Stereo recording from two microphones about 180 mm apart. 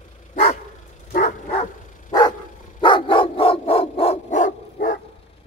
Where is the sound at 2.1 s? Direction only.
25° left (ahead or behind); by 5.0 s 45° left (ahead or behind).